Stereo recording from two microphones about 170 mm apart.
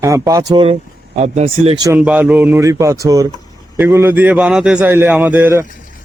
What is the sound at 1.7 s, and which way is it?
Speech, 20° right (ahead or behind).